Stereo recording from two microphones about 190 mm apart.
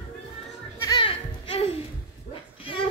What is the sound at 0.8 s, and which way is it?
Music, 25° left (ahead or behind).